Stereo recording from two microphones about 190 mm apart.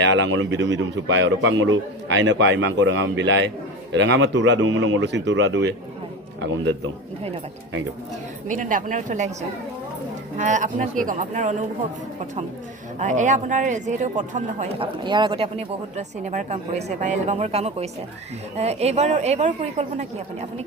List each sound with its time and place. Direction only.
0.0 s speech: 75° right (ahead or behind)
8.4 s speech: 45° right (ahead or behind)
13.0 s speech: 40° right (ahead or behind)
14.8 s speech: 25° right (ahead or behind)